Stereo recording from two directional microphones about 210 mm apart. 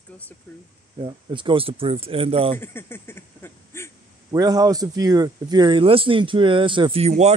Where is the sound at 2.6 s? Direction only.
10° left (ahead or behind).